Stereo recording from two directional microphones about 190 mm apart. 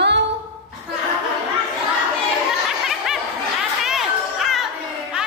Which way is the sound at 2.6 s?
Centre (ahead or behind).